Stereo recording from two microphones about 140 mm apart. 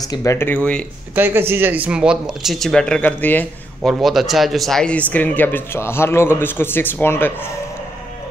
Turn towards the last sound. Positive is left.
turn(degrees=15)  # may be behind; listen again after turning